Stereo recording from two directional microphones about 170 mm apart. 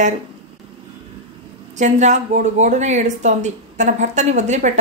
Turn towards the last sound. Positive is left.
turn(degrees=-45)  # may be behind; listen again after turning